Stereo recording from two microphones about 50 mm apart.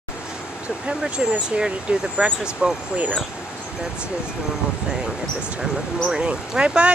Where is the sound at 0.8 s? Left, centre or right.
Right.